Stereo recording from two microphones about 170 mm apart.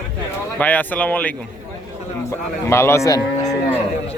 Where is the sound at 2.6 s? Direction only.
15° left (ahead or behind).